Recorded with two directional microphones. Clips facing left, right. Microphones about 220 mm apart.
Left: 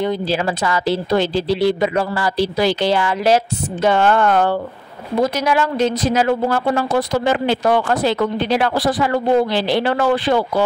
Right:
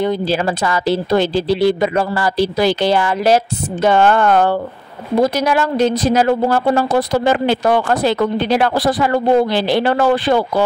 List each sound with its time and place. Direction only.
0.0 s speech: 45° right (ahead or behind)
7.4 s speech: 45° right (ahead or behind)